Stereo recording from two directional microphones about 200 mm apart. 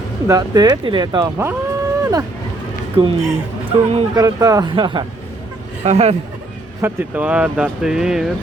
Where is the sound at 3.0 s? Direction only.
25° right (ahead or behind).